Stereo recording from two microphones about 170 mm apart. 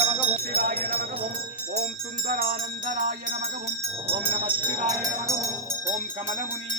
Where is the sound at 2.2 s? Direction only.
60° right (ahead or behind).